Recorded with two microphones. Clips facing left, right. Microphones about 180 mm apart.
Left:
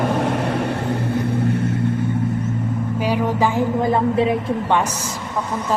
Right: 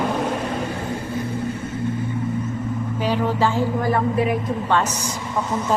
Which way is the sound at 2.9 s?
10° left (ahead or behind).